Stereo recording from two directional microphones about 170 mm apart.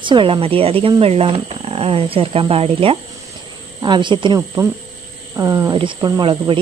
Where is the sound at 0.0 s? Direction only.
30° right (ahead or behind).